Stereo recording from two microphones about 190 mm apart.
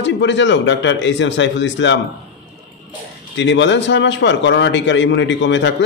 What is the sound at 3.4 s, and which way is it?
A man's voice, 70° left (ahead or behind).